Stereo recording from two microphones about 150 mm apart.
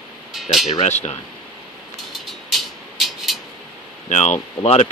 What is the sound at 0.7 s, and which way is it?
Speech, 50° left (ahead or behind).